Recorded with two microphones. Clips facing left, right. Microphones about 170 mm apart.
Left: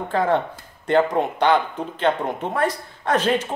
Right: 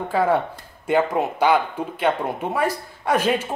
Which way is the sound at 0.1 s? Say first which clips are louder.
Even; 10° right (ahead or behind).